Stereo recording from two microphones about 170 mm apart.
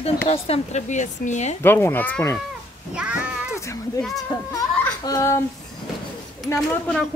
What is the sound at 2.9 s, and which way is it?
Speech, 5° right (ahead or behind).